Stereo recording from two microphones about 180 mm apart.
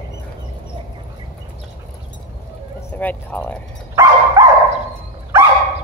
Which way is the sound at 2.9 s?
10° left (ahead or behind).